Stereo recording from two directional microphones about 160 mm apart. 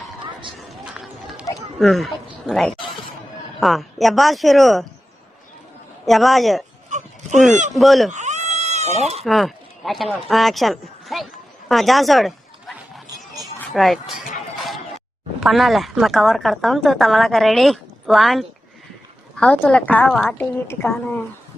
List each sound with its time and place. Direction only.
1.5 s bow-wow: centre (ahead or behind)
3.6 s speech: centre (ahead or behind)
6.1 s speech: centre (ahead or behind)
6.9 s dog: 50° right (ahead or behind)
7.7 s speech: centre (ahead or behind)
8.1 s a sound: 45° right (ahead or behind)
9.2 s speech: centre (ahead or behind)
13.1 s a sound: 20° right (ahead or behind)
13.7 s speech: centre (ahead or behind)
15.4 s speech: centre (ahead or behind)